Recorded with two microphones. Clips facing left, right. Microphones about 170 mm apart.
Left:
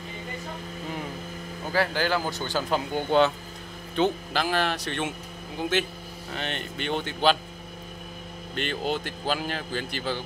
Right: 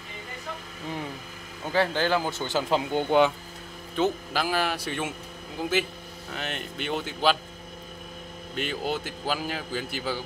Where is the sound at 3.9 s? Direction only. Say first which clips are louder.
Left 1 dB; 5° right (ahead or behind).